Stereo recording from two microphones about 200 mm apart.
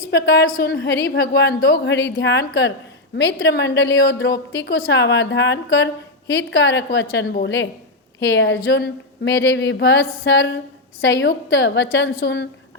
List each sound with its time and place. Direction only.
0.1 s a woman's voice: 55° left (ahead or behind)